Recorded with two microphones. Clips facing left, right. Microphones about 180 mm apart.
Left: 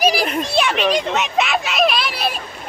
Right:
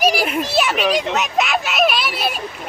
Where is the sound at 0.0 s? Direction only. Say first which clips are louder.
Even; centre (ahead or behind).